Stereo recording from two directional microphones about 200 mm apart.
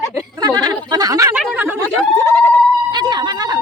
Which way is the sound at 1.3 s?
5° right (ahead or behind).